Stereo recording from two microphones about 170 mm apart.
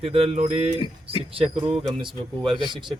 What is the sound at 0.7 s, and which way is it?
Speech, 30° left (ahead or behind).